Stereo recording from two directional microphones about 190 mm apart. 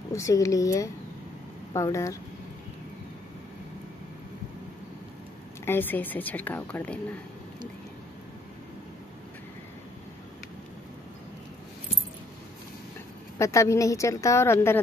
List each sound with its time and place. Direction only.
0.1 s a woman's voice: 15° left (ahead or behind)
5.7 s a woman's voice: 10° left (ahead or behind)
13.4 s a woman's voice: 15° left (ahead or behind)